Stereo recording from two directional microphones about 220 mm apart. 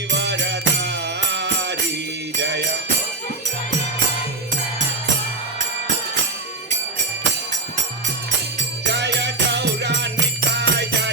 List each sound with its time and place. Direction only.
0.1 s music: 50° right (ahead or behind)
8.9 s music: 50° right (ahead or behind)